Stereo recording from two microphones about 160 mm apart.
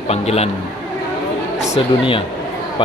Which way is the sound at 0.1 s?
40° left (ahead or behind).